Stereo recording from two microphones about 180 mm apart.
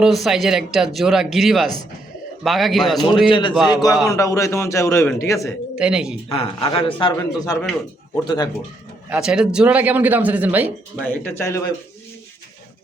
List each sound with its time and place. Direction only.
0.0 s speech: centre (ahead or behind)
3.2 s a man's voice: 25° left (ahead or behind)
5.7 s speech: 5° right (ahead or behind)
6.2 s a man's voice: 30° left (ahead or behind)
7.6 s a man's voice: 10° left (ahead or behind)
9.0 s speech: 5° right (ahead or behind)
11.1 s a man's voice: 10° left (ahead or behind)